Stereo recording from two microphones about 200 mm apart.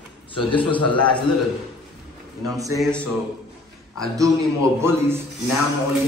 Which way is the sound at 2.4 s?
15° right (ahead or behind).